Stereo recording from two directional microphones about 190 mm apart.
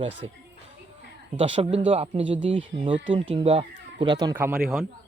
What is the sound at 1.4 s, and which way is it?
Speech, 30° right (ahead or behind).